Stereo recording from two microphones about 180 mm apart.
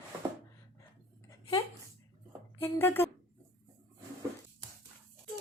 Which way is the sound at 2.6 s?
10° left (ahead or behind).